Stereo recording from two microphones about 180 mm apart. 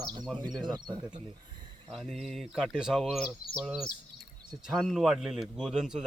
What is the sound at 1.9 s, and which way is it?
A man's voice, centre (ahead or behind).